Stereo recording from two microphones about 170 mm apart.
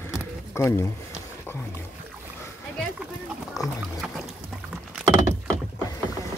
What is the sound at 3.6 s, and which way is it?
Music, 20° left (ahead or behind).